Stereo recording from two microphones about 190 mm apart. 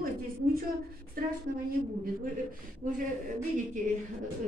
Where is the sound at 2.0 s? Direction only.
50° right (ahead or behind).